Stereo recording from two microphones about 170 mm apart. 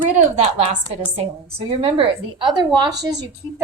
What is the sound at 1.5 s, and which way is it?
A woman's voice, 35° right (ahead or behind).